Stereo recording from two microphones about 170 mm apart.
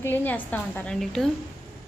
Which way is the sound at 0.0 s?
10° left (ahead or behind).